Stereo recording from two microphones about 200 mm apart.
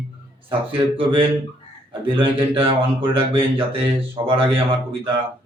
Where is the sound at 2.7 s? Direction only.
25° right (ahead or behind).